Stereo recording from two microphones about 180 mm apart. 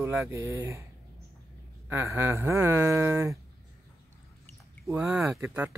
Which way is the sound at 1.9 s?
15° right (ahead or behind).